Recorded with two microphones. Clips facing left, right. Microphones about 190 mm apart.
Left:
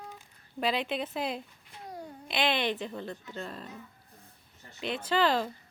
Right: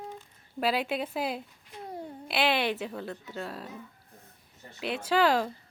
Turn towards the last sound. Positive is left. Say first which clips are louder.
# right 2 dB
turn(degrees=-10)  # may be behind; listen again after turning